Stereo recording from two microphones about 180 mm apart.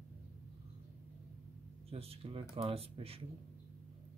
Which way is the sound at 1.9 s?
35° right (ahead or behind).